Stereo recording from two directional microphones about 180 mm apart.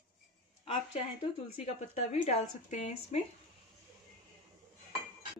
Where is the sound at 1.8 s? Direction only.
40° left (ahead or behind).